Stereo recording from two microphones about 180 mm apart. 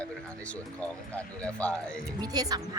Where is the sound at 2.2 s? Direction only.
20° right (ahead or behind).